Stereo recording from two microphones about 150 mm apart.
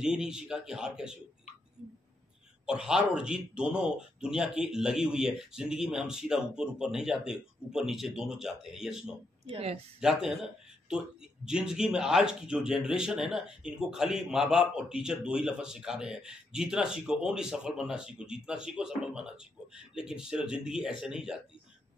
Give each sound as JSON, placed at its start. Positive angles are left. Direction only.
{"t": 0.0, "sound": "speech", "side_deg": -5}
{"t": 2.6, "sound": "speech", "side_deg": -5}
{"t": 9.5, "sound": "speech", "side_deg": -40}
{"t": 9.9, "sound": "speech", "side_deg": -5}
{"t": 19.9, "sound": "speech", "side_deg": -5}